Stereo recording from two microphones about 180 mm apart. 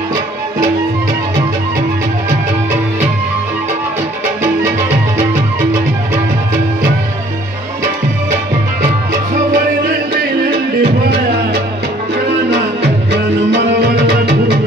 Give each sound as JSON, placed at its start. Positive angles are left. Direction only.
{"t": 10.8, "sound": "music", "side_deg": -60}